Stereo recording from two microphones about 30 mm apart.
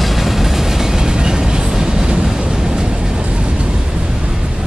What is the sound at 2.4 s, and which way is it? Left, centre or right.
Vehicle, right.